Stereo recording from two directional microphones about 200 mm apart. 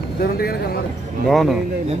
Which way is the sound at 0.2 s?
50° left (ahead or behind).